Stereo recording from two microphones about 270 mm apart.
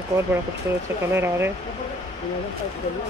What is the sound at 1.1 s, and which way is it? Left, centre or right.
Speech, centre.